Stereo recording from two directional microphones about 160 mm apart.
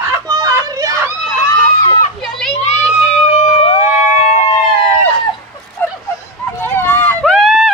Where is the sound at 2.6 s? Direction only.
45° left (ahead or behind).